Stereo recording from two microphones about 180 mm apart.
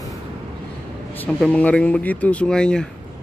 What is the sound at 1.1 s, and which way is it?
Speech, 10° left (ahead or behind).